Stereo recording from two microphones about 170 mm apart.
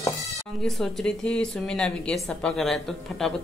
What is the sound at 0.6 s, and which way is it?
Speech, centre (ahead or behind).